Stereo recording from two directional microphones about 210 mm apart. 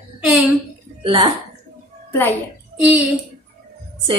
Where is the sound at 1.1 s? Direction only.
15° right (ahead or behind).